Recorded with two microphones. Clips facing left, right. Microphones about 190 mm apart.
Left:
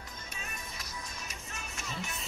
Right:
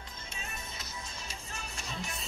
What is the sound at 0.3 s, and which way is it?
Music, 25° right (ahead or behind).